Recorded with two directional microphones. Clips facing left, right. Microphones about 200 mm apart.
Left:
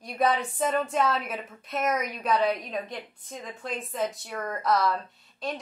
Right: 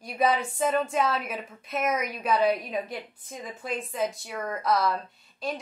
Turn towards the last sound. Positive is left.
turn(degrees=0)  # may be behind; listen again after turning